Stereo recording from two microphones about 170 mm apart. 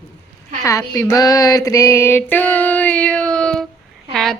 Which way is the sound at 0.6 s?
15° left (ahead or behind).